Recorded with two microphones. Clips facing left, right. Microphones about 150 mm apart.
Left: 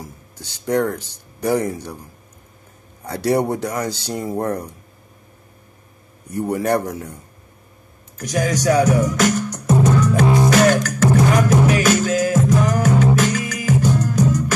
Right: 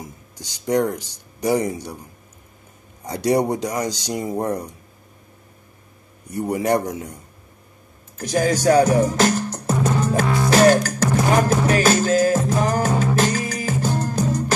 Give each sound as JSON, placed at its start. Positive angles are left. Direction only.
{"t": 0.0, "sound": "speech", "side_deg": -15}
{"t": 3.0, "sound": "speech", "side_deg": -15}
{"t": 6.2, "sound": "speech", "side_deg": -10}
{"t": 8.2, "sound": "speech", "side_deg": -30}
{"t": 9.9, "sound": "music", "side_deg": -30}
{"t": 10.2, "sound": "music", "side_deg": 20}
{"t": 10.5, "sound": "beatboxing", "side_deg": -30}
{"t": 11.8, "sound": "music", "side_deg": -30}